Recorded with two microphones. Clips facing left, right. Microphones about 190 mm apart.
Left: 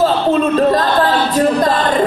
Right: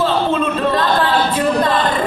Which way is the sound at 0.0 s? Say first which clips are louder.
Left 3 dB; 40° left (ahead or behind).